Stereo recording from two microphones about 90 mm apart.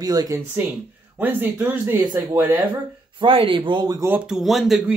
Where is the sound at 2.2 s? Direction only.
25° right (ahead or behind).